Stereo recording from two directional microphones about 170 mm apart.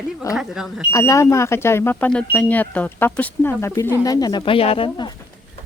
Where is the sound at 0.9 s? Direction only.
20° left (ahead or behind).